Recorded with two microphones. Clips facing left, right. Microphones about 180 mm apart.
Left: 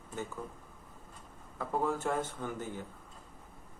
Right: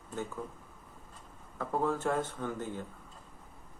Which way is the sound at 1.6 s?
10° left (ahead or behind).